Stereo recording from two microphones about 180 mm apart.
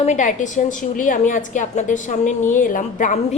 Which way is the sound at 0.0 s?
40° left (ahead or behind).